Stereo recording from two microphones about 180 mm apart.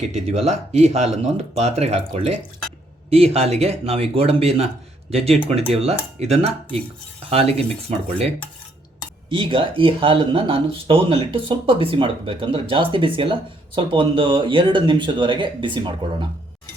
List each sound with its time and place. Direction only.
0.1 s speech: 35° right (ahead or behind)
9.4 s speech: 30° right (ahead or behind)